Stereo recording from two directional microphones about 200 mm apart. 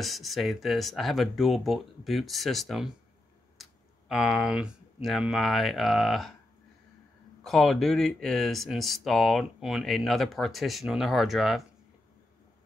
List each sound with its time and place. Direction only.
0.0 s speech: centre (ahead or behind)
3.6 s a sound: centre (ahead or behind)
4.1 s speech: 5° right (ahead or behind)
7.4 s speech: centre (ahead or behind)